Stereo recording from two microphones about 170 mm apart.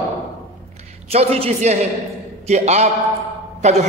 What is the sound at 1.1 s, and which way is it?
A woman's voice, 35° right (ahead or behind).